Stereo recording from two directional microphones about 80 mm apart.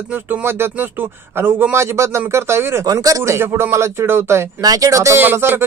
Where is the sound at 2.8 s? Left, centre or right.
Right.